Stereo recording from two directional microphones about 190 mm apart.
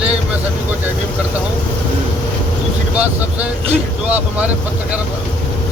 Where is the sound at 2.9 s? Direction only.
10° right (ahead or behind).